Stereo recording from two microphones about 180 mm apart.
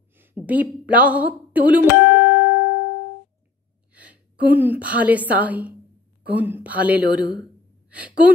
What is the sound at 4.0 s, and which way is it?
A woman's voice, 10° right (ahead or behind).